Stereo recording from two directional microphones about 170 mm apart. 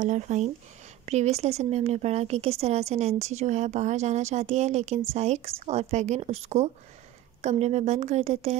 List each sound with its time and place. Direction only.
0.0 s speech: 45° right (ahead or behind)